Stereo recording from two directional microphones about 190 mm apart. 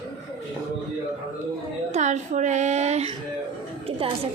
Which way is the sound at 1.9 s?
40° right (ahead or behind).